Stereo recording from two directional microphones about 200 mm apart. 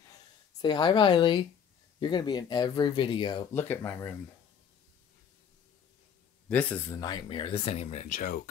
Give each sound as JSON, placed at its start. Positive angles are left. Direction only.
{"t": 0.6, "sound": "speech", "side_deg": 20}
{"t": 3.5, "sound": "speech", "side_deg": 10}
{"t": 6.5, "sound": "speech", "side_deg": 10}